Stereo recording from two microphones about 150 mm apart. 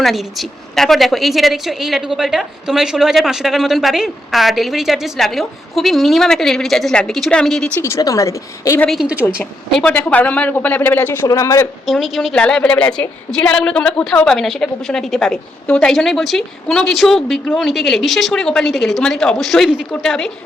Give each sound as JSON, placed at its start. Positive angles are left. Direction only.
{"t": 0.0, "sound": "a woman's voice", "side_deg": 0}
{"t": 7.8, "sound": "a woman's voice", "side_deg": 20}
{"t": 8.9, "sound": "a woman's voice", "side_deg": -5}
{"t": 9.2, "sound": "a woman's voice", "side_deg": 10}
{"t": 11.9, "sound": "a woman's voice", "side_deg": 0}